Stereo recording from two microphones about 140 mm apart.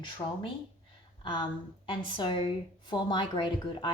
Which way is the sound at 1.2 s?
35° left (ahead or behind).